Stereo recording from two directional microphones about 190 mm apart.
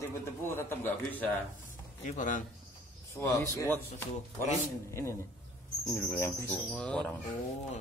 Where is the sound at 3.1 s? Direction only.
15° left (ahead or behind).